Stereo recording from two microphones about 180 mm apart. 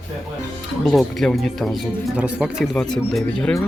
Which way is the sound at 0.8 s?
Centre (ahead or behind).